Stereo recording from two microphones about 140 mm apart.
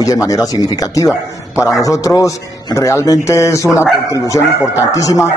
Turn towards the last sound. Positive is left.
turn(degrees=25)  # may be behind; listen again after turning